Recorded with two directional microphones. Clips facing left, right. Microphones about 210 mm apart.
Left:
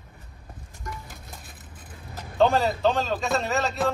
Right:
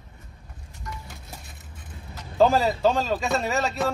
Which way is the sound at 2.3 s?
Centre (ahead or behind).